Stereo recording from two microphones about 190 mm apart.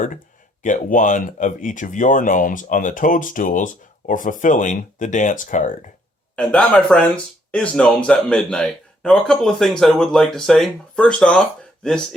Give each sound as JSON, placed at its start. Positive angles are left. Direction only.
{"t": 0.6, "sound": "speech", "side_deg": 45}
{"t": 6.3, "sound": "speech", "side_deg": 5}